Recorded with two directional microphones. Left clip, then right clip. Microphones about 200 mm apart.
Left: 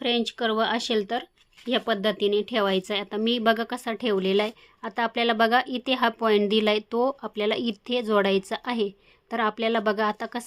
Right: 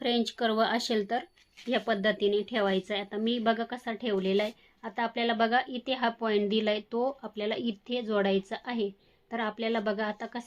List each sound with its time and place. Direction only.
0.0 s speech: 25° left (ahead or behind); by 10.4 s 50° left (ahead or behind)